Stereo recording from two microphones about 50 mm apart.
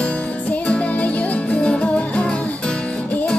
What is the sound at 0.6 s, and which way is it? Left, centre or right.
Music, left.